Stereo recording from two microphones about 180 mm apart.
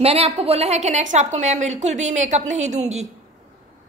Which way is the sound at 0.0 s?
35° right (ahead or behind).